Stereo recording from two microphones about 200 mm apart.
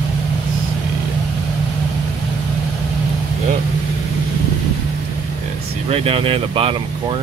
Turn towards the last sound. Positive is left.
turn(degrees=-30)  # may be behind; listen again after turning